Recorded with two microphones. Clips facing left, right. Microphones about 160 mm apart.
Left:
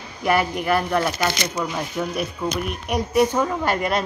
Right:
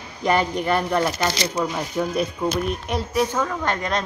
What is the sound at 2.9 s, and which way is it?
A woman's voice, 10° left (ahead or behind).